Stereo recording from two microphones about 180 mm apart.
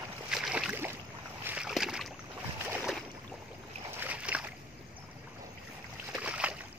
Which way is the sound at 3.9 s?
10° right (ahead or behind).